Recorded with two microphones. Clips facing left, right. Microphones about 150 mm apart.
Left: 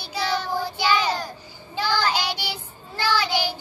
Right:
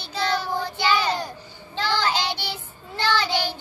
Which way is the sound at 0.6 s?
10° left (ahead or behind).